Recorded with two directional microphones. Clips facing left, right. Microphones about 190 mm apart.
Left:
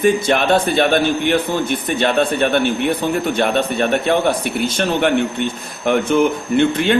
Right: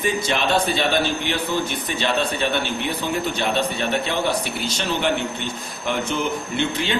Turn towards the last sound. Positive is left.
turn(degrees=55)  # may be behind; listen again after turning